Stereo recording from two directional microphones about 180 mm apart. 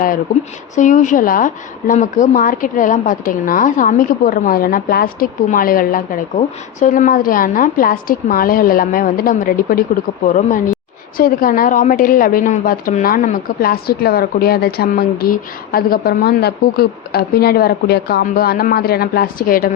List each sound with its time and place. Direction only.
0.8 s a woman's voice: 45° left (ahead or behind)
11.2 s a woman's voice: 55° left (ahead or behind)